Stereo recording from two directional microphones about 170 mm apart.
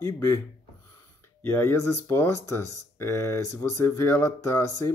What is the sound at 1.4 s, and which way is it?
Speech, 15° left (ahead or behind).